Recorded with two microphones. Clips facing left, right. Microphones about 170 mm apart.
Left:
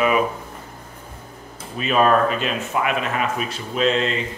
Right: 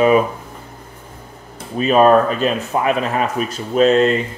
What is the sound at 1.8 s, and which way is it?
Speech, 40° right (ahead or behind).